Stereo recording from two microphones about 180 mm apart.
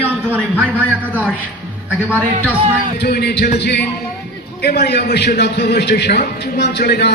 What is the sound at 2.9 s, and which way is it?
A man's voice, 65° left (ahead or behind).